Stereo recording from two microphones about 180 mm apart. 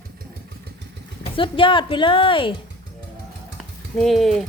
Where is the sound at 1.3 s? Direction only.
30° left (ahead or behind).